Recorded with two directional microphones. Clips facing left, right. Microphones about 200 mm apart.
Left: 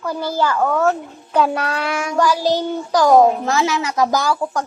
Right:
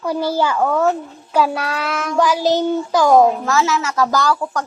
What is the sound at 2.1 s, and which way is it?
Speech, 15° right (ahead or behind).